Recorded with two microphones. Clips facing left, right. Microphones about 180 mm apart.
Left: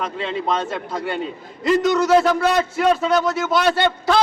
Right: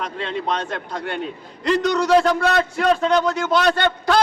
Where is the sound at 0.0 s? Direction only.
5° left (ahead or behind).